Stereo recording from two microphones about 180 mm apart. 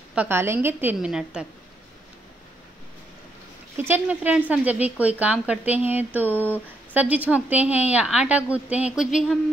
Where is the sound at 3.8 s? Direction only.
10° right (ahead or behind).